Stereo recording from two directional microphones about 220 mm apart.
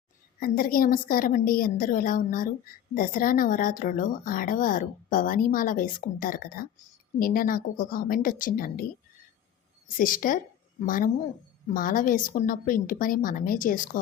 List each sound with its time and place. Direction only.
0.3 s speech: 40° left (ahead or behind)
10.0 s speech: 40° left (ahead or behind)